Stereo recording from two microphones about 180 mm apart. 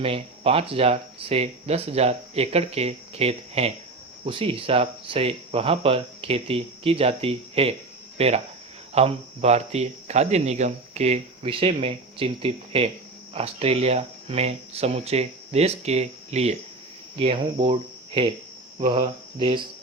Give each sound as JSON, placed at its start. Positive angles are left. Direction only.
{"t": 0.0, "sound": "speech", "side_deg": -35}
{"t": 8.9, "sound": "speech", "side_deg": -35}